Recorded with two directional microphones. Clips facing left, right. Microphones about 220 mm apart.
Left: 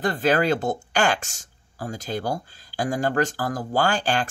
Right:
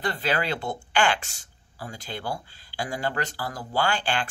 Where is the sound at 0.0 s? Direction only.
45° left (ahead or behind).